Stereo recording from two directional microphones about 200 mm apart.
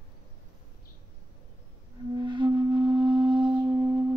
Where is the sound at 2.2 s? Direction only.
25° right (ahead or behind).